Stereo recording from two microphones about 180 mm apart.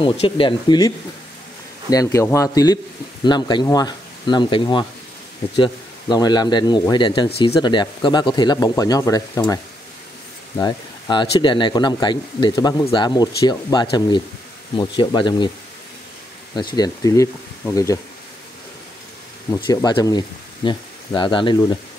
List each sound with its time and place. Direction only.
0.0 s speech: 25° left (ahead or behind)
10.6 s speech: 25° left (ahead or behind)
16.5 s speech: 20° left (ahead or behind)
19.7 s speech: 20° left (ahead or behind)